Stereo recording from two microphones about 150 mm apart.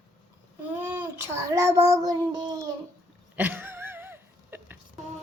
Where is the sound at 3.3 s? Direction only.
10° right (ahead or behind).